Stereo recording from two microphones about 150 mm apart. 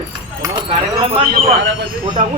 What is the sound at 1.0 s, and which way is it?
Speech, 35° right (ahead or behind).